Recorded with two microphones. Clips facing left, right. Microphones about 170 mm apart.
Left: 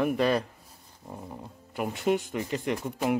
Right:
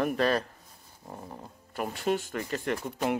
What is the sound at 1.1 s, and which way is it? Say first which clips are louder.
Speech: left 2 dB; 5° right (ahead or behind).